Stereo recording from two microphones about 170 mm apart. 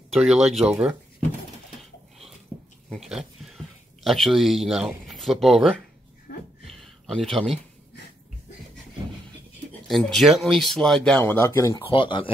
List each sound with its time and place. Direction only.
0.1 s speech: centre (ahead or behind)
2.9 s speech: centre (ahead or behind)
6.7 s a sound: centre (ahead or behind)
9.8 s speech: centre (ahead or behind); by 11.8 s 20° left (ahead or behind)
11.8 s speech: 30° left (ahead or behind)